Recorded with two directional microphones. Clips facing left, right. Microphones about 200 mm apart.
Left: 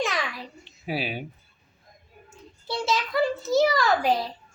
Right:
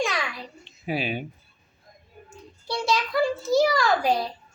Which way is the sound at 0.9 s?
5° left (ahead or behind).